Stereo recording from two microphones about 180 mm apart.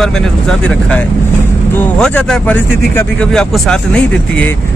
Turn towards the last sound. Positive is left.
turn(degrees=5)  # may be behind; listen again after turning